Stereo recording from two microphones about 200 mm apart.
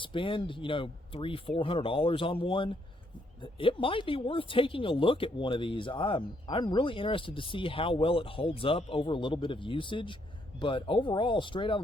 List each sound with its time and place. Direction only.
0.0 s speech: 25° left (ahead or behind)